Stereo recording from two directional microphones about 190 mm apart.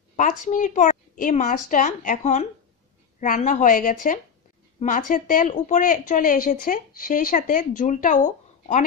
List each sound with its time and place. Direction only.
0.1 s a woman's voice: 40° left (ahead or behind)